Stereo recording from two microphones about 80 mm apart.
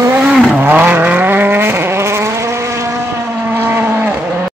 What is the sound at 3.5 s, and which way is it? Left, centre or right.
Vehicle, right.